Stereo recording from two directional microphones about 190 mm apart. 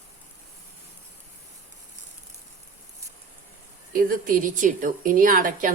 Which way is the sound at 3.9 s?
50° right (ahead or behind).